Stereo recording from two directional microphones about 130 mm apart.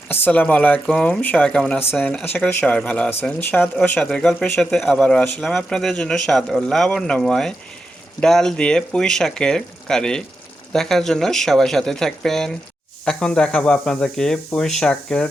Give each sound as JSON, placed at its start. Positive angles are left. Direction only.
{"t": 0.1, "sound": "a man's voice", "side_deg": 10}